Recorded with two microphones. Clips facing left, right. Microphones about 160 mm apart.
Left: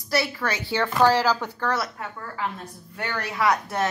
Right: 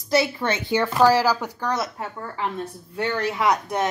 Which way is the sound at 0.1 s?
20° right (ahead or behind).